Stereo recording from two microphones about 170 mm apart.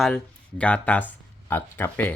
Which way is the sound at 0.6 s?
10° left (ahead or behind).